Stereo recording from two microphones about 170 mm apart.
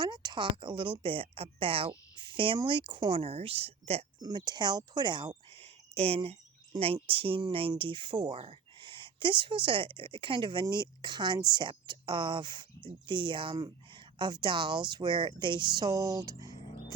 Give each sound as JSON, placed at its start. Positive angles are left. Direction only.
{"t": 0.0, "sound": "speech", "side_deg": -25}
{"t": 4.2, "sound": "speech", "side_deg": -25}